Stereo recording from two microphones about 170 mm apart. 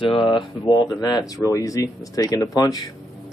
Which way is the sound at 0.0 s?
30° left (ahead or behind).